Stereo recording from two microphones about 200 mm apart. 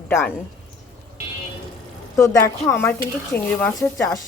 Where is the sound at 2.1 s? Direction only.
15° left (ahead or behind).